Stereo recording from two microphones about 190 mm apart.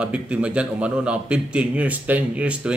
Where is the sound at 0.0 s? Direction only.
5° right (ahead or behind).